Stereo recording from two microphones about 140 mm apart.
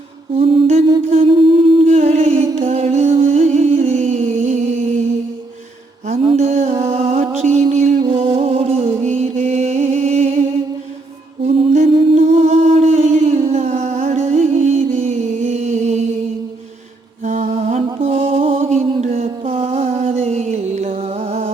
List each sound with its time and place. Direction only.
0.3 s humming: 40° right (ahead or behind)
0.9 s a sound: 40° right (ahead or behind)
2.0 s music: 50° right (ahead or behind)
6.1 s music: 45° right (ahead or behind)
9.0 s music: 55° right (ahead or behind)
11.4 s music: 40° right (ahead or behind)
12.1 s a sound: 45° right (ahead or behind)
17.2 s music: 55° right (ahead or behind)
18.0 s mantra: 50° right (ahead or behind)